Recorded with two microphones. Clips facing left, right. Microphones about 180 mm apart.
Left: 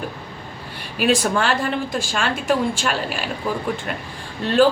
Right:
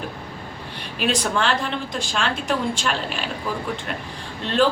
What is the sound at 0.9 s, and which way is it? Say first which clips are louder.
A woman's voice: left 4 dB; 5° left (ahead or behind).